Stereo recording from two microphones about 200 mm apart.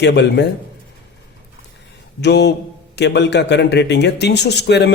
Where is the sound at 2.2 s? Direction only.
55° left (ahead or behind).